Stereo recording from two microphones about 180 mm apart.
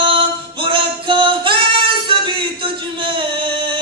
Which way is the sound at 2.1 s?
30° right (ahead or behind).